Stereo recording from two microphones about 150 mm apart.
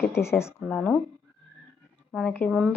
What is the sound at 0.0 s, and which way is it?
Speech, 15° left (ahead or behind).